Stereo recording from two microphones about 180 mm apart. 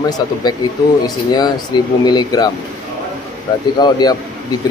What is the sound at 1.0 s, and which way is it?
Speech, 20° left (ahead or behind).